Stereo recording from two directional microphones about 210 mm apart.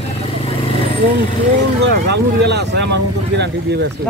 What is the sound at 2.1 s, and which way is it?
Speech, 55° right (ahead or behind).